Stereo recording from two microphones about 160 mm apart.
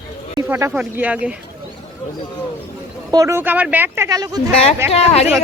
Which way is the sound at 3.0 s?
15° right (ahead or behind).